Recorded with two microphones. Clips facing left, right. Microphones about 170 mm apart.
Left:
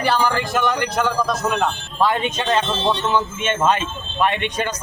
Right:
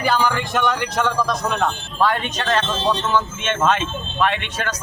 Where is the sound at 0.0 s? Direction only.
Centre (ahead or behind).